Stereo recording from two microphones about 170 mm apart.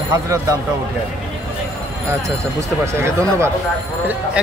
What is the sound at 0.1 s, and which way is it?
Speech, 20° right (ahead or behind).